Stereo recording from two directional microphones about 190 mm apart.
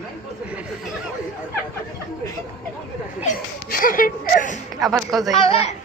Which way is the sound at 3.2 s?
50° left (ahead or behind).